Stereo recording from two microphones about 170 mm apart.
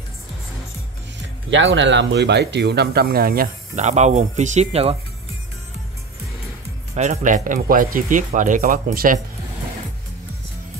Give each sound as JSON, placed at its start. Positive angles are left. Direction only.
{"t": 1.5, "sound": "speech", "side_deg": -90}
{"t": 3.7, "sound": "speech", "side_deg": -40}
{"t": 7.0, "sound": "speech", "side_deg": -45}